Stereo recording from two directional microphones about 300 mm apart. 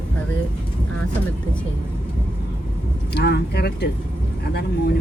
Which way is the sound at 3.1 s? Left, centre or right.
Left.